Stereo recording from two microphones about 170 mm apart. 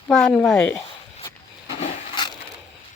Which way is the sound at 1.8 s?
30° left (ahead or behind).